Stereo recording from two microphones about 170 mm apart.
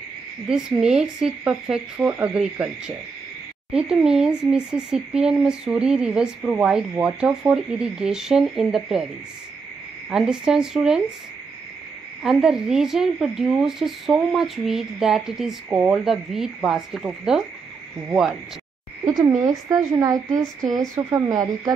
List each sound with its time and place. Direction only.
0.5 s speech: 5° right (ahead or behind)
3.7 s speech: 5° right (ahead or behind)
10.0 s speech: 5° right (ahead or behind)
12.2 s speech: centre (ahead or behind)
19.0 s speech: 20° right (ahead or behind)